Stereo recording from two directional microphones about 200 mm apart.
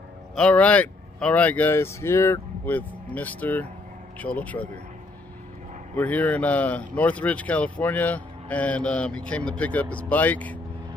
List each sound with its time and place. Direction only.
0.4 s speech: 5° left (ahead or behind)
5.9 s speech: 10° left (ahead or behind)